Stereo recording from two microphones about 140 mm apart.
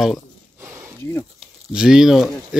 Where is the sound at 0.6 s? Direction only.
15° right (ahead or behind).